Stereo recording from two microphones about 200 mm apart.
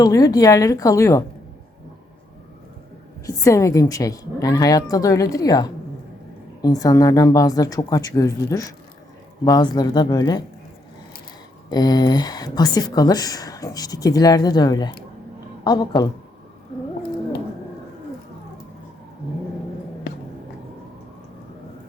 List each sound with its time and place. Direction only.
0.0 s a woman's voice: 20° left (ahead or behind)
3.2 s a woman's voice: 15° left (ahead or behind)
11.7 s speech: 20° left (ahead or behind)